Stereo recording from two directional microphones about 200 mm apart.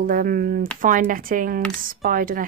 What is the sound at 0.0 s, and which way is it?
Speech, 45° right (ahead or behind).